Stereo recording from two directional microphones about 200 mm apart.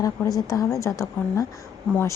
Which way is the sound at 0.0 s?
15° left (ahead or behind).